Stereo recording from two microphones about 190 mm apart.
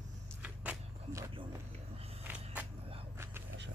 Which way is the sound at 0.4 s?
10° right (ahead or behind).